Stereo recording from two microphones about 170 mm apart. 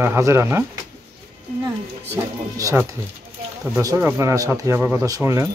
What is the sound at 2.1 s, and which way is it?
Speech, 15° right (ahead or behind).